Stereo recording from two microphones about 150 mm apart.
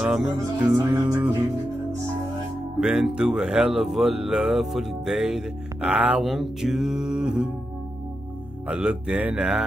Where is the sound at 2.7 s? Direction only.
5° right (ahead or behind).